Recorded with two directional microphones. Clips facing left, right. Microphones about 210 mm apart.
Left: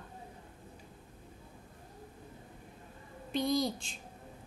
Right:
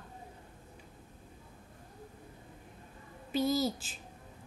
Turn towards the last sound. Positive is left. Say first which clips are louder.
# right 1 dB
turn(degrees=-5)  # may be behind; listen again after turning